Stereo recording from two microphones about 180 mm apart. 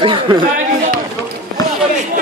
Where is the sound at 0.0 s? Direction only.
25° right (ahead or behind).